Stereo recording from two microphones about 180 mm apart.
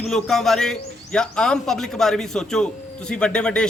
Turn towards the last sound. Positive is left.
turn(degrees=5)  # may be behind; listen again after turning